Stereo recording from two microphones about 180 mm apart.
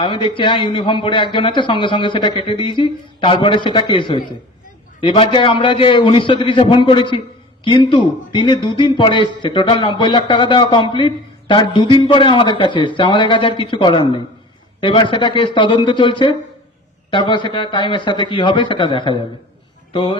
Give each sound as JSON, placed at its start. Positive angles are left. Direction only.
{"t": 0.0, "sound": "a man's voice", "side_deg": 30}